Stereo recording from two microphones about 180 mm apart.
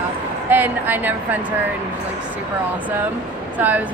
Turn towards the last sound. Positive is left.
turn(degrees=-10)  # may be behind; listen again after turning